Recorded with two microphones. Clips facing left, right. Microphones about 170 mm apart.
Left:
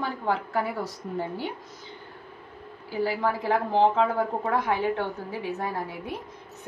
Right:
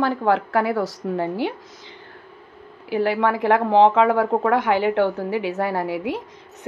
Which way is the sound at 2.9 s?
80° right.